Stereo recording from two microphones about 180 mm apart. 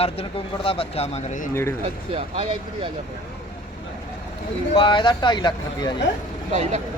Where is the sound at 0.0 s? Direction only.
30° left (ahead or behind).